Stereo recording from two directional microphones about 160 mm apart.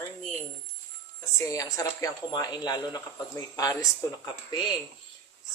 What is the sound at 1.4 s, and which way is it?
Speech, 20° left (ahead or behind).